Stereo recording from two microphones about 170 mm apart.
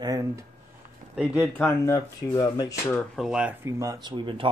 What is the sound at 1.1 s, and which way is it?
Speech, 5° right (ahead or behind).